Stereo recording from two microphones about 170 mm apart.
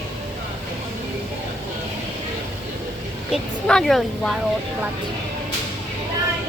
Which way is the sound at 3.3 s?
5° left (ahead or behind).